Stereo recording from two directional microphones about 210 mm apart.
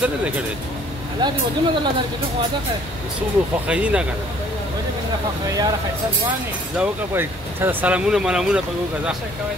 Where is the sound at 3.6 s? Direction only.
5° right (ahead or behind).